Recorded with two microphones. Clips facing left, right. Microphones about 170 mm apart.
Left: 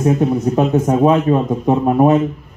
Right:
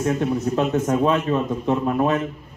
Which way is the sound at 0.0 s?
20° left (ahead or behind).